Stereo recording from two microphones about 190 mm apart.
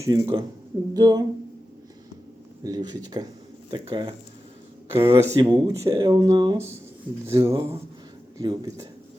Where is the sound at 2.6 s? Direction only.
20° right (ahead or behind).